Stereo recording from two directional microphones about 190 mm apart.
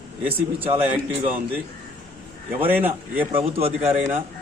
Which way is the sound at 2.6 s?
10° right (ahead or behind).